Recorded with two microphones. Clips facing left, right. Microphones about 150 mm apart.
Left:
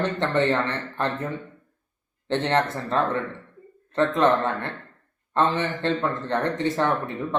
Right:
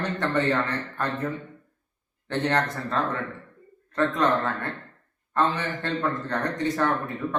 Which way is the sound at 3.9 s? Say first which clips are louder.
Left 3 dB; 25° left (ahead or behind).